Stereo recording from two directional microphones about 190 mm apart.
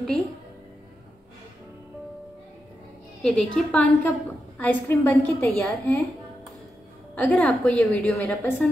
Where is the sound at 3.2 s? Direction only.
5° left (ahead or behind).